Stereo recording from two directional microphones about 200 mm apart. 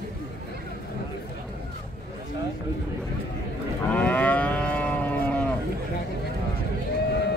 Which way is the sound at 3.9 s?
5° left (ahead or behind).